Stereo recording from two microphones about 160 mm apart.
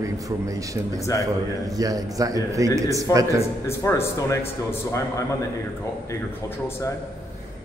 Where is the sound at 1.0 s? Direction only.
20° left (ahead or behind).